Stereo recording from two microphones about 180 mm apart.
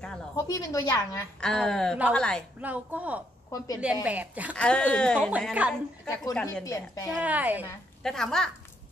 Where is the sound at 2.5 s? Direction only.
10° right (ahead or behind).